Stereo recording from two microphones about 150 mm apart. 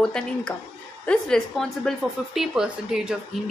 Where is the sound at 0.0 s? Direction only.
5° left (ahead or behind).